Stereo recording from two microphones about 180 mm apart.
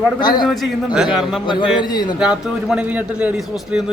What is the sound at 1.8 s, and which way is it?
Speech, 25° left (ahead or behind).